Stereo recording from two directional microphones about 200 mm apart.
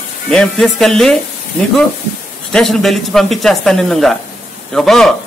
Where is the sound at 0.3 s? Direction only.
5° left (ahead or behind).